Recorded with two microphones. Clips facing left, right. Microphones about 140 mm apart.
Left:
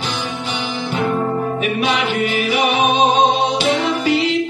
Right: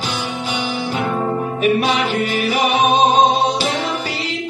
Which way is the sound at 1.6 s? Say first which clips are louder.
Right 6 dB; 40° right (ahead or behind).